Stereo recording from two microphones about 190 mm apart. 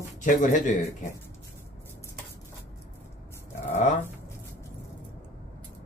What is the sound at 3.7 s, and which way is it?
Speech, 40° left (ahead or behind).